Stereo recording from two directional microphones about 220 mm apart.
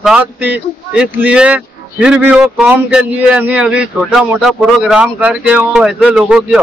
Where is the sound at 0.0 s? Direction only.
5° right (ahead or behind).